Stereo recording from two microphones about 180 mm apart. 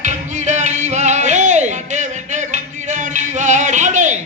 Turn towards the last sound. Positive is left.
turn(degrees=-40)  # may be behind; listen again after turning